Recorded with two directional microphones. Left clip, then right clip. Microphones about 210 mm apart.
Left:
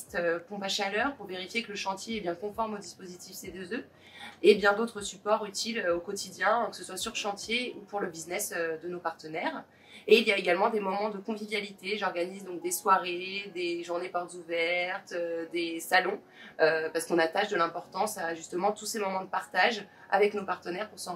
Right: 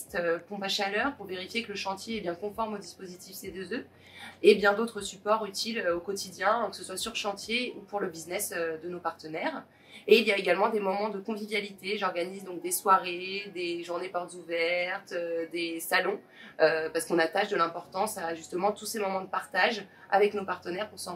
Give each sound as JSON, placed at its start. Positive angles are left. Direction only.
{"t": 0.1, "sound": "speech", "side_deg": -5}
{"t": 4.4, "sound": "a woman's voice", "side_deg": -10}